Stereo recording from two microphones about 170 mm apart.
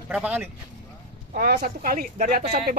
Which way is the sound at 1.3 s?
55° right (ahead or behind).